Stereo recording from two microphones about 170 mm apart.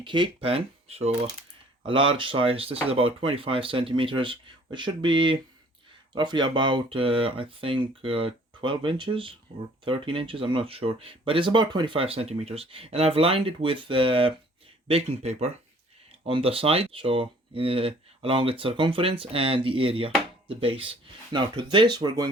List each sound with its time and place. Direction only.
0.0 s speech: 30° right (ahead or behind)